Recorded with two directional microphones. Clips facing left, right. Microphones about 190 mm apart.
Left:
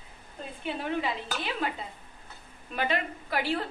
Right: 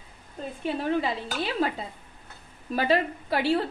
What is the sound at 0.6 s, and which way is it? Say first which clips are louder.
A woman's voice: right 4 dB; 35° right (ahead or behind).